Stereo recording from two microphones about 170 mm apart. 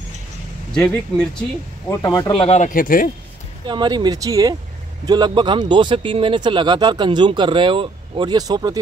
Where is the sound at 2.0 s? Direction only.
25° left (ahead or behind); by 3.0 s 55° left (ahead or behind).